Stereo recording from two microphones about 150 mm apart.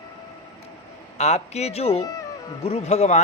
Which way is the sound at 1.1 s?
50° left (ahead or behind).